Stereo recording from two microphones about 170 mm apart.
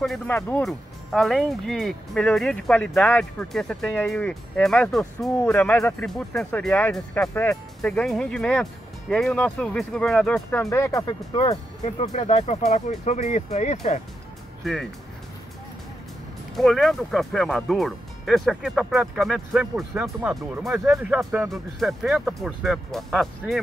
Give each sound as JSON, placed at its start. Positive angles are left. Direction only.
{"t": 0.3, "sound": "speech", "side_deg": 15}
{"t": 0.6, "sound": "speech", "side_deg": 0}
{"t": 10.6, "sound": "speech", "side_deg": 15}
{"t": 11.5, "sound": "speech", "side_deg": 40}
{"t": 14.6, "sound": "speech", "side_deg": 0}
{"t": 16.5, "sound": "speech", "side_deg": 0}